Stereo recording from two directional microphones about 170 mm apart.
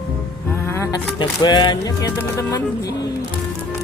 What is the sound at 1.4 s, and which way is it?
Speech, 25° left (ahead or behind).